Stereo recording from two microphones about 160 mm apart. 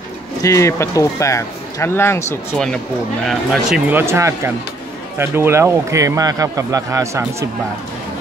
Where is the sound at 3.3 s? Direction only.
Centre (ahead or behind); by 7.5 s 20° right (ahead or behind).